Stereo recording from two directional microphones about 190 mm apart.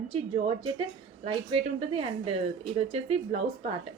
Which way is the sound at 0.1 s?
30° right (ahead or behind).